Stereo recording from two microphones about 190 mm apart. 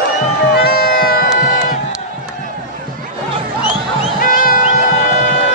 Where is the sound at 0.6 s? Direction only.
55° left (ahead or behind).